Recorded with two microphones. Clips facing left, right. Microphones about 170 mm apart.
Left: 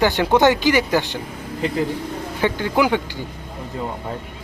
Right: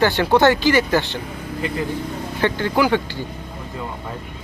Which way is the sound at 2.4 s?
15° left (ahead or behind).